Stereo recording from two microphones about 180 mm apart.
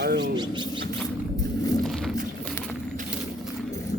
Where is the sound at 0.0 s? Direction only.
70° right (ahead or behind).